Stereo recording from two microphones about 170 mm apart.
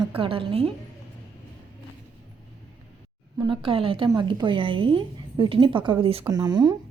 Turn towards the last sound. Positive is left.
turn(degrees=-25)  # may be behind; listen again after turning